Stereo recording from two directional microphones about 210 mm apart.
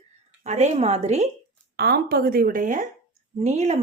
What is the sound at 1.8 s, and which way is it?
A woman's voice, 50° right (ahead or behind).